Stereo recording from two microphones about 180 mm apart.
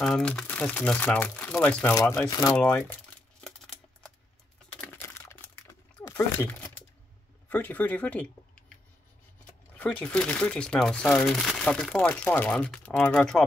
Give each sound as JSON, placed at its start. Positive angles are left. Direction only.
{"t": 0.0, "sound": "speech", "side_deg": 5}
{"t": 2.5, "sound": "crumpling", "side_deg": 5}
{"t": 4.7, "sound": "typing", "side_deg": 10}
{"t": 7.4, "sound": "speech", "side_deg": 10}
{"t": 9.8, "sound": "speech", "side_deg": 5}